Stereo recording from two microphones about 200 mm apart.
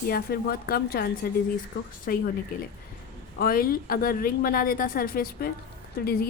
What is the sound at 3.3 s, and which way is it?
A woman's voice, 50° left (ahead or behind).